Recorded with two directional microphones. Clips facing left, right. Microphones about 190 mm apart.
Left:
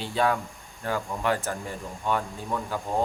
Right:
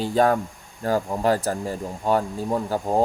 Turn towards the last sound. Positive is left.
turn(degrees=-40)  # may be behind; listen again after turning